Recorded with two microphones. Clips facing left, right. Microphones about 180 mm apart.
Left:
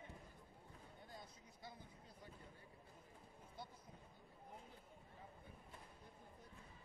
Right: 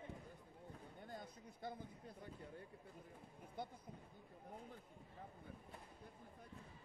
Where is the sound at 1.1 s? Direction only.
55° right (ahead or behind).